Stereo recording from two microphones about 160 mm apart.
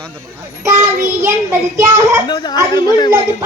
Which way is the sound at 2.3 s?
25° left (ahead or behind).